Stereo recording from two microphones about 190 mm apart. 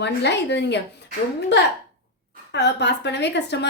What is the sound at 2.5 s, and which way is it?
A woman's voice, 65° left (ahead or behind).